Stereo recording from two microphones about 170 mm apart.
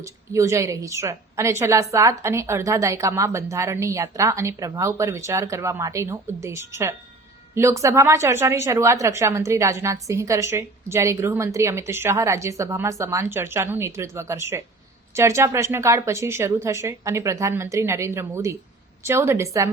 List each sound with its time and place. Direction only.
0.0 s a woman's voice: 20° right (ahead or behind)